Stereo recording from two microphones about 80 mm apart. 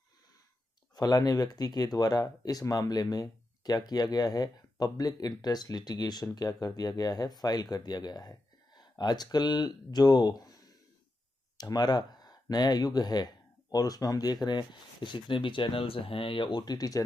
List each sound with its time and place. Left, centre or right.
0.9 s speech: left